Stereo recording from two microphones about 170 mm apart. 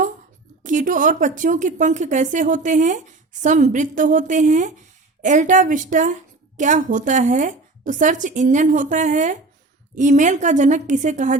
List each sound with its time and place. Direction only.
0.6 s speech: 50° right (ahead or behind)